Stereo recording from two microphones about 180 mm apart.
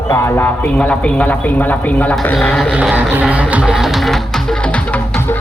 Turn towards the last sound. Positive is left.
turn(degrees=10)  # may be behind; listen again after turning